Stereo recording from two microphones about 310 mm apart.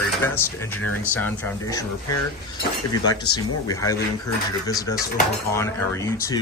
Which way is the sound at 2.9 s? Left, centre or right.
Centre.